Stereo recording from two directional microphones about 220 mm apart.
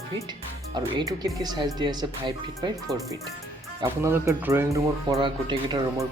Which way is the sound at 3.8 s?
15° right (ahead or behind).